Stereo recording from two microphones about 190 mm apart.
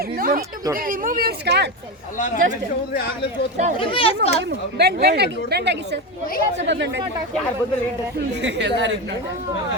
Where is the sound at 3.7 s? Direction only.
25° left (ahead or behind).